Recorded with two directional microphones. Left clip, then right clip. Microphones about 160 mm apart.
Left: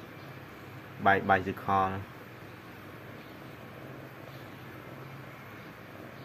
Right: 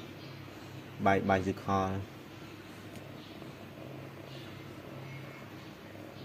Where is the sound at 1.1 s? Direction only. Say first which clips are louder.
Left 3 dB; 35° right (ahead or behind).